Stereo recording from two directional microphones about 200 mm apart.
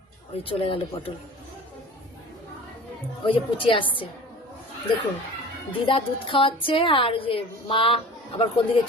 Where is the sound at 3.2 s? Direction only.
25° left (ahead or behind).